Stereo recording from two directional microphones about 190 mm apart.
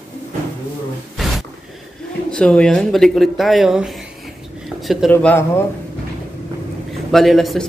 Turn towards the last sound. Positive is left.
turn(degrees=0)  # may be behind; listen again after turning